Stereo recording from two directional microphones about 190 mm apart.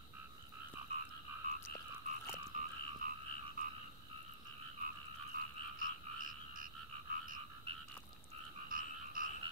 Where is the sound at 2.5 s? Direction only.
45° right (ahead or behind).